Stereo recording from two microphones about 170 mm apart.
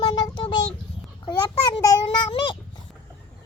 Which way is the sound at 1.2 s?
25° left (ahead or behind).